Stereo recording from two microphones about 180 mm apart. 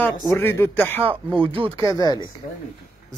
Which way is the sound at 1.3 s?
30° right (ahead or behind).